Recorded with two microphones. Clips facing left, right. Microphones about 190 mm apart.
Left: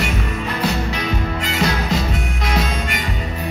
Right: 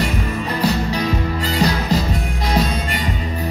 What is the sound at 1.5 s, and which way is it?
Music, 35° right (ahead or behind).